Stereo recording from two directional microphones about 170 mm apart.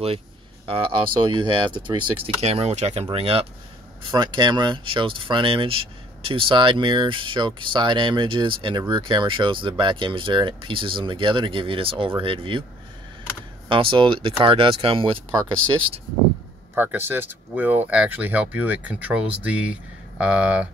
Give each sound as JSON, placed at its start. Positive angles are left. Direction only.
{"t": 0.7, "sound": "speech", "side_deg": -30}
{"t": 13.7, "sound": "speech", "side_deg": -30}
{"t": 16.7, "sound": "speech", "side_deg": -15}